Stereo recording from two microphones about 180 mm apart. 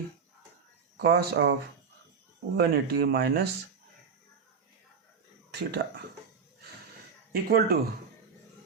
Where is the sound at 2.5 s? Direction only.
65° right (ahead or behind).